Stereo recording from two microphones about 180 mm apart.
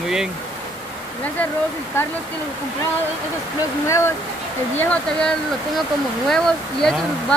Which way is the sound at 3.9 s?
15° left (ahead or behind).